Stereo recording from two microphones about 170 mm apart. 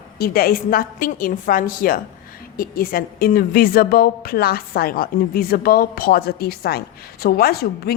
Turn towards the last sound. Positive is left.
turn(degrees=65)  # may be behind; listen again after turning